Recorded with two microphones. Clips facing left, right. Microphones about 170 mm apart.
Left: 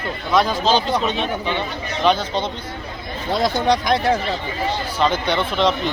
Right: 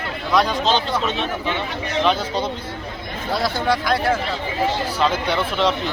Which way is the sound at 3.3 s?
20° left (ahead or behind).